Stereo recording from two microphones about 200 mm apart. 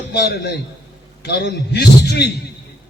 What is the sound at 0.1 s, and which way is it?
A man's voice, 55° left (ahead or behind).